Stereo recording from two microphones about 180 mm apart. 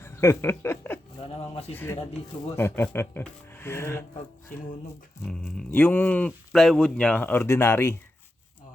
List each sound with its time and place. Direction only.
0.0 s a sound: 15° left (ahead or behind)
1.2 s speech: 35° left (ahead or behind)
1.7 s speech: 10° left (ahead or behind)
5.2 s speech: 5° left (ahead or behind)